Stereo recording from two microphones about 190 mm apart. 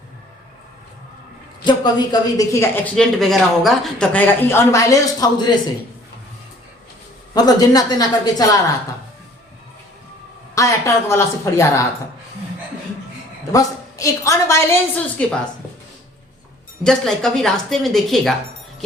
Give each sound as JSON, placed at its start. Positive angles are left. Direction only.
{"t": 1.6, "sound": "a woman's voice", "side_deg": 20}
{"t": 2.9, "sound": "a woman's voice", "side_deg": 0}
{"t": 7.3, "sound": "a woman's voice", "side_deg": 20}
{"t": 10.5, "sound": "a woman's voice", "side_deg": 15}
{"t": 13.5, "sound": "a woman's voice", "side_deg": 15}
{"t": 16.8, "sound": "speech", "side_deg": 5}